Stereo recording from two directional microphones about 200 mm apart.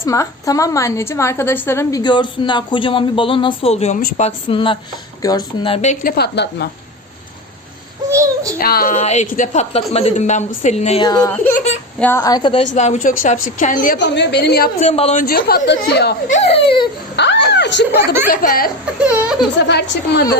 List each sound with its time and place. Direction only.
0.1 s a woman's voice: 15° left (ahead or behind); by 6.7 s 55° left (ahead or behind)
8.1 s child singing: 15° right (ahead or behind)
8.5 s a woman's voice: 50° left (ahead or behind)
11.0 s a woman's voice: 20° left (ahead or behind)
12.7 s a woman's voice: 35° left (ahead or behind)
14.2 s a woman's voice: 55° left (ahead or behind)
14.8 s a woman's voice: 35° left (ahead or behind); by 16.1 s 55° left (ahead or behind)
16.3 s a woman's voice: 30° left (ahead or behind)
17.2 s speech: 60° left (ahead or behind)
18.3 s a woman's voice: 45° left (ahead or behind)
19.0 s speech: 5° right (ahead or behind)
19.6 s a woman's voice: 60° left (ahead or behind)